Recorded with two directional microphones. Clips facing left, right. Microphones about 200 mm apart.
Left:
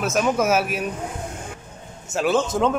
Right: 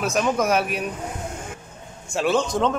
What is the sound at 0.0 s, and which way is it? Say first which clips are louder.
Speech: left 1 dB; 5° left (ahead or behind).